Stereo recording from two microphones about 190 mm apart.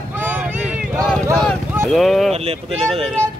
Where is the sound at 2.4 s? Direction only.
30° right (ahead or behind).